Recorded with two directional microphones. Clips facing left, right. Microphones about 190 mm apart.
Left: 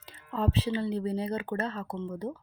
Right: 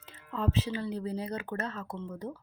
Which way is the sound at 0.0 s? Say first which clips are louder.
Left 2 dB; 35° left (ahead or behind).